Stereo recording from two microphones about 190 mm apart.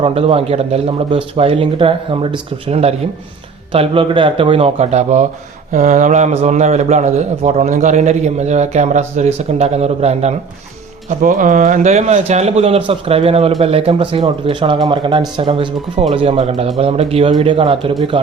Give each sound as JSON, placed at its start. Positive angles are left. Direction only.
{"t": 0.0, "sound": "a man's voice", "side_deg": -30}
{"t": 11.2, "sound": "a man's voice", "side_deg": -45}